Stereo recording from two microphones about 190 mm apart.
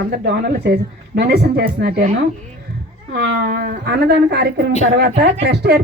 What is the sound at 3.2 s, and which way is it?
A woman's voice, 60° right (ahead or behind).